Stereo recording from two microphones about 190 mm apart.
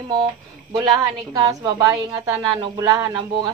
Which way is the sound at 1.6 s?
20° right (ahead or behind).